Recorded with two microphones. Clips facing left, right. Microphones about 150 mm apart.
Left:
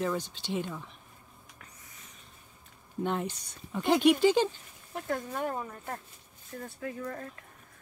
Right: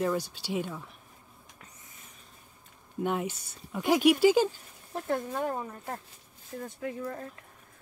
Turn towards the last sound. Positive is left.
turn(degrees=-20)  # may be behind; listen again after turning